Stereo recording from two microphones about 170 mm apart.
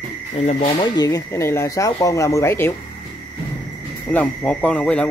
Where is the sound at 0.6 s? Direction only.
25° left (ahead or behind).